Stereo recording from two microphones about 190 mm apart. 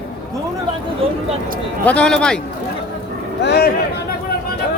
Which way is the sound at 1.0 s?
30° right (ahead or behind).